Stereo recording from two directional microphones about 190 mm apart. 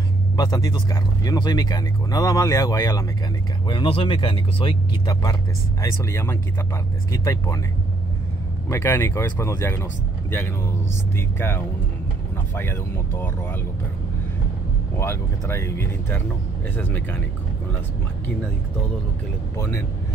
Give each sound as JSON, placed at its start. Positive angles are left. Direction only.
{"t": 0.4, "sound": "speech", "side_deg": 20}
{"t": 8.6, "sound": "speech", "side_deg": 15}
{"t": 11.1, "sound": "speech", "side_deg": 10}
{"t": 15.0, "sound": "speech", "side_deg": 15}
{"t": 19.5, "sound": "speech", "side_deg": 15}